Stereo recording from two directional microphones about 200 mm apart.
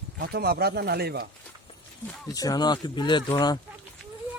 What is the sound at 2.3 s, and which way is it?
Speech, 20° left (ahead or behind).